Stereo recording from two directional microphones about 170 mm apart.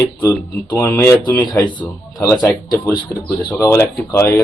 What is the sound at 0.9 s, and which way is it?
Speech, 25° left (ahead or behind).